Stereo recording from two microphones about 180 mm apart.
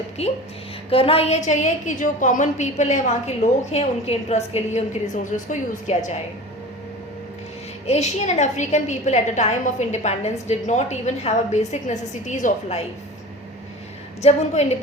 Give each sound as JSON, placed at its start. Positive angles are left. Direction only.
{"t": 0.2, "sound": "a woman's voice", "side_deg": 35}
{"t": 7.9, "sound": "a woman's voice", "side_deg": 40}
{"t": 14.2, "sound": "a woman's voice", "side_deg": 35}